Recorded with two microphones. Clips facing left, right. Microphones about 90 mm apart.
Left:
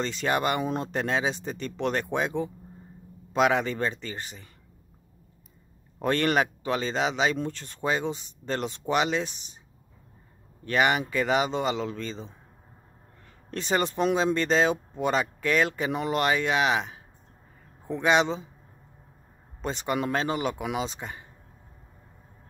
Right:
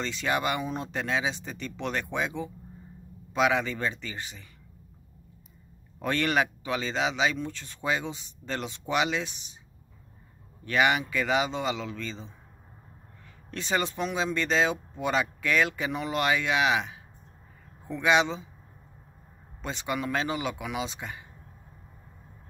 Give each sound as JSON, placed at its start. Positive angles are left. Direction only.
{"t": 0.0, "sound": "speech", "side_deg": 40}
{"t": 5.9, "sound": "speech", "side_deg": 40}
{"t": 10.6, "sound": "speech", "side_deg": 35}
{"t": 13.5, "sound": "speech", "side_deg": 40}
{"t": 19.6, "sound": "speech", "side_deg": 40}